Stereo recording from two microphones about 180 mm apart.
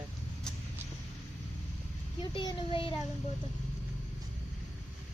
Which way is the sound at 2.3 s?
25° left (ahead or behind).